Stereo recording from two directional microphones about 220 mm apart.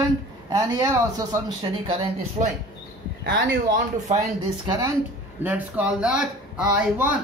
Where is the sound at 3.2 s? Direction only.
50° right (ahead or behind).